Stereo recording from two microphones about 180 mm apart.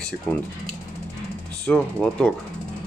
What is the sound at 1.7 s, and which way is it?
Speech, 5° left (ahead or behind).